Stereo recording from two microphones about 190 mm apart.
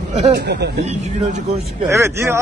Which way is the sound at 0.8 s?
35° right (ahead or behind).